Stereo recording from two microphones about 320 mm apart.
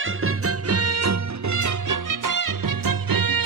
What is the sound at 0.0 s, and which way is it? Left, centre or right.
Music, right.